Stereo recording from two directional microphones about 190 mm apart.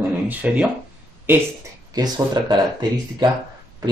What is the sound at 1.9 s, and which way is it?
Speech, 20° right (ahead or behind).